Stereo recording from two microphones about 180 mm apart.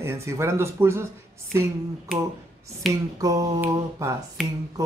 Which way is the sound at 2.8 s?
Centre (ahead or behind).